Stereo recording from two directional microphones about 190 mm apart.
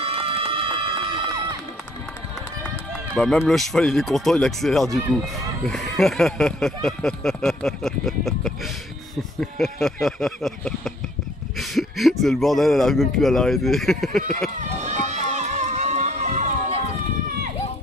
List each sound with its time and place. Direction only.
0.0 s run: 30° right (ahead or behind)
3.4 s speech: centre (ahead or behind)
14.6 s run: 40° right (ahead or behind)